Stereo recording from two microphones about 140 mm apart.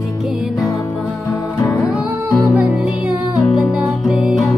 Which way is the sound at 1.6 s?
25° left (ahead or behind).